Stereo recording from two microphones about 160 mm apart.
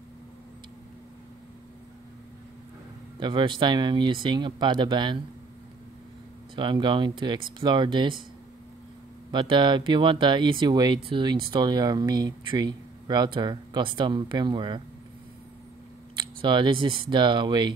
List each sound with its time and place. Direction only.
3.2 s speech: 30° right (ahead or behind)
6.5 s speech: 30° right (ahead or behind)
9.3 s speech: 30° right (ahead or behind)
16.2 s speech: 30° right (ahead or behind)